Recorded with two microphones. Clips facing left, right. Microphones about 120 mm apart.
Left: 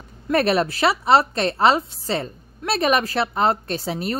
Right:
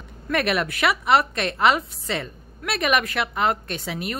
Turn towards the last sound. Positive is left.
turn(degrees=35)  # may be behind; listen again after turning